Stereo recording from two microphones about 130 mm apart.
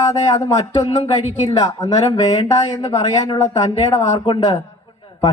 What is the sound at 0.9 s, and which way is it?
Speech, 60° left (ahead or behind).